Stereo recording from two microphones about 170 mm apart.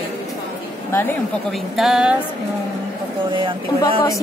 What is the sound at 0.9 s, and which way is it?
Speech, 15° left (ahead or behind).